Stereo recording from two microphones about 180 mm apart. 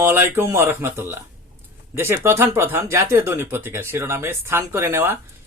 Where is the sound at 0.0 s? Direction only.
10° right (ahead or behind).